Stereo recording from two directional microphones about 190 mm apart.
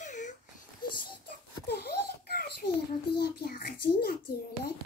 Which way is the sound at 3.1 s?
55° left (ahead or behind).